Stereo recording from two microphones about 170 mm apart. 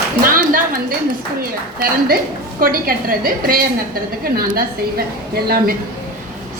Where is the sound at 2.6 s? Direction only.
55° right (ahead or behind).